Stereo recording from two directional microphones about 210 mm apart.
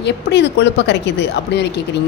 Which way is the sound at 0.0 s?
55° left (ahead or behind).